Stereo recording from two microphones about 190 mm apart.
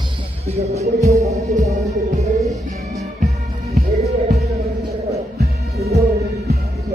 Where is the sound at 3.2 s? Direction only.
50° right (ahead or behind).